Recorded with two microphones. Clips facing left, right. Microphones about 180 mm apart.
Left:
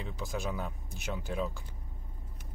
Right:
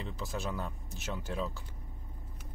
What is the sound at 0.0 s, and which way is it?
Speech, centre (ahead or behind).